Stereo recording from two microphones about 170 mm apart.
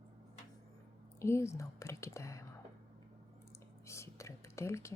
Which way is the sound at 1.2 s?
15° left (ahead or behind).